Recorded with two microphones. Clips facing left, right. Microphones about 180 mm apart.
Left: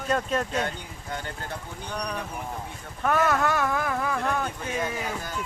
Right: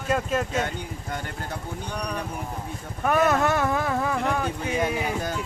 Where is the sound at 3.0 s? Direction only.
15° right (ahead or behind).